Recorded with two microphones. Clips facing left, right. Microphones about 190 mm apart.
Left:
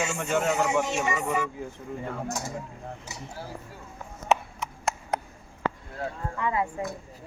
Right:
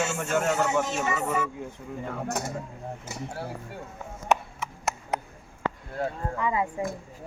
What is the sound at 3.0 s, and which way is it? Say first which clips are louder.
Speech: right 4 dB; 60° right (ahead or behind).